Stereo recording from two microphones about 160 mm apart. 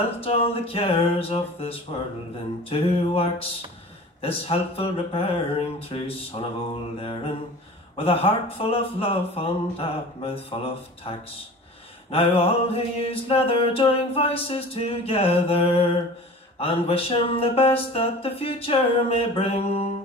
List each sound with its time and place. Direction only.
0.2 s music: 35° left (ahead or behind)